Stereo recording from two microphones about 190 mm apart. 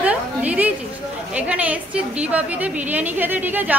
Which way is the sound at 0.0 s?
5° right (ahead or behind).